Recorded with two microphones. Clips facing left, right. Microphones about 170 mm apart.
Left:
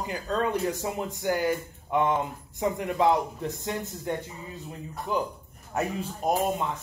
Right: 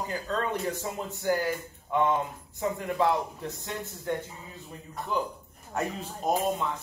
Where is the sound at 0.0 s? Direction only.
15° left (ahead or behind).